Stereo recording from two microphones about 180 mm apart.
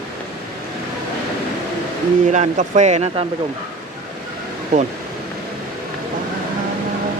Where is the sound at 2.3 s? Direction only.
40° right (ahead or behind).